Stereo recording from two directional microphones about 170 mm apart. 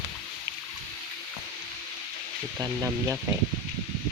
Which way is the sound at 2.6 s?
20° right (ahead or behind).